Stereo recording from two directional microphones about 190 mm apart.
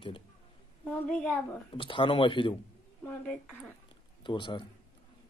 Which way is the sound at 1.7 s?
25° left (ahead or behind).